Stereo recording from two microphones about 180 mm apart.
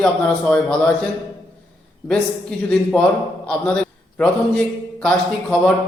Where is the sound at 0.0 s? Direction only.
5° left (ahead or behind).